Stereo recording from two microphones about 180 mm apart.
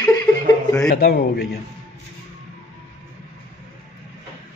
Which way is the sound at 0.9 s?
55° left (ahead or behind).